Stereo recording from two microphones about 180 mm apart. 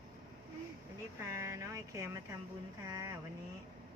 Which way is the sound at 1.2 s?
15° right (ahead or behind).